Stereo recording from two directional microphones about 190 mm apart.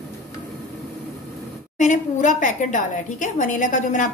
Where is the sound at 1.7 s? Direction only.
40° left (ahead or behind).